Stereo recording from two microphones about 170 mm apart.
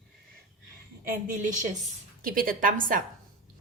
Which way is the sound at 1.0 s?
55° right (ahead or behind).